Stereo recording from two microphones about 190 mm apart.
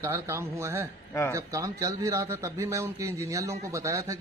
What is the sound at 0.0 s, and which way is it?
A man's voice, 15° right (ahead or behind).